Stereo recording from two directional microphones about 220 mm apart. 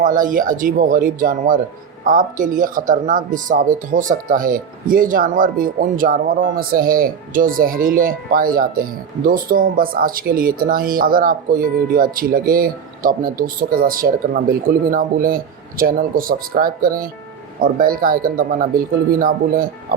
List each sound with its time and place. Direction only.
0.0 s speech: 40° right (ahead or behind)